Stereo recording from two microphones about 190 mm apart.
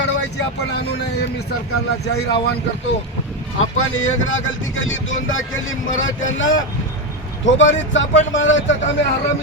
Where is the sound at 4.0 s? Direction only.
90° left.